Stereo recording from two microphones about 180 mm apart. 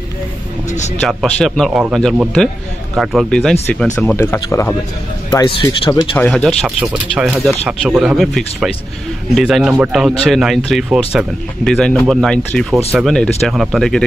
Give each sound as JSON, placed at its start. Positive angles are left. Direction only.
{"t": 0.7, "sound": "speech", "side_deg": 40}
{"t": 1.0, "sound": "speech", "side_deg": 0}
{"t": 4.2, "sound": "speech", "side_deg": 15}
{"t": 6.1, "sound": "speech", "side_deg": 0}